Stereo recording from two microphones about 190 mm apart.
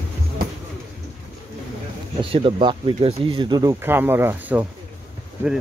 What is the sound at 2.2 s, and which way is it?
Speech, 30° right (ahead or behind).